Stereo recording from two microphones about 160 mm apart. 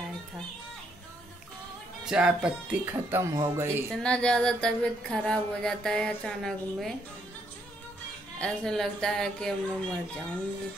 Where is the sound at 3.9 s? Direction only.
5° left (ahead or behind).